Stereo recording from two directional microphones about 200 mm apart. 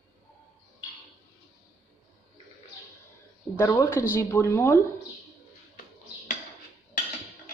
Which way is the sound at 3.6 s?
15° left (ahead or behind).